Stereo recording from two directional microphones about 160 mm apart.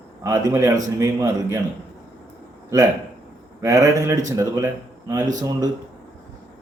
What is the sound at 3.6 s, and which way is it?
A man's voice, 20° right (ahead or behind).